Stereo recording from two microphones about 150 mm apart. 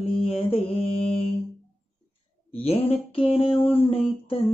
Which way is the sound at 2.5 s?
40° left (ahead or behind).